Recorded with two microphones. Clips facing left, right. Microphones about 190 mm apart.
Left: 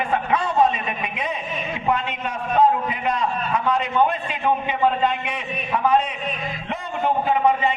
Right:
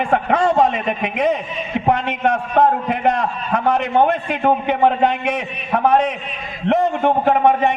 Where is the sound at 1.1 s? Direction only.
70° right (ahead or behind).